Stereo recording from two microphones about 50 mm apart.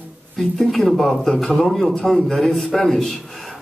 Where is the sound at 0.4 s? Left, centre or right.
Centre.